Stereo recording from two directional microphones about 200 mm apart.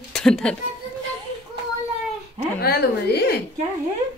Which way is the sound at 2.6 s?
50° left (ahead or behind).